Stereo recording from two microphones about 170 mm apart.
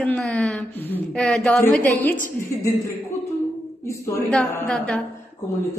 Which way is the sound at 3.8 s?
20° left (ahead or behind).